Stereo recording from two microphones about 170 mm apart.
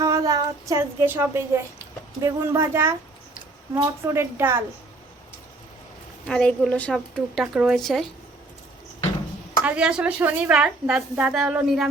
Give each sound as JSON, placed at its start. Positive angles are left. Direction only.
{"t": 0.0, "sound": "a sound", "side_deg": -20}
{"t": 2.2, "sound": "a woman's voice", "side_deg": -15}
{"t": 6.2, "sound": "a woman's voice", "side_deg": 5}
{"t": 9.6, "sound": "a woman's voice", "side_deg": -5}